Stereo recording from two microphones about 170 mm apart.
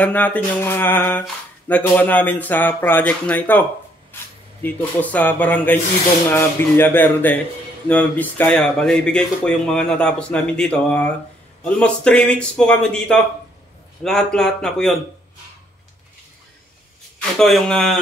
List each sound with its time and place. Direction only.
0.0 s speech: 10° left (ahead or behind)
17.4 s speech: centre (ahead or behind)